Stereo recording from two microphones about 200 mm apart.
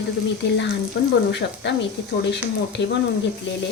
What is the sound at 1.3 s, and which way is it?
Speech, 60° left (ahead or behind).